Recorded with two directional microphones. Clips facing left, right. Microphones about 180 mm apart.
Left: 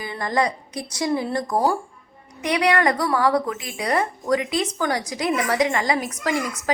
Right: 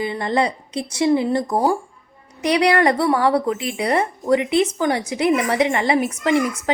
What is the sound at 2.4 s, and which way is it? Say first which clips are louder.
A woman's voice: right 3 dB; 30° right (ahead or behind).